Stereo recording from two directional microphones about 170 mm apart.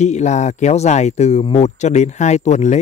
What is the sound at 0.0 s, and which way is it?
Speech, 40° left (ahead or behind).